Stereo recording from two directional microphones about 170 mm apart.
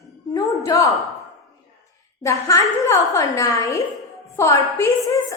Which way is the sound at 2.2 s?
20° left (ahead or behind).